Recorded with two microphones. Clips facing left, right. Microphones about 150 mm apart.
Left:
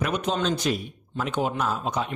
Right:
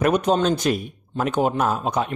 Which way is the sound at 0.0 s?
45° right (ahead or behind).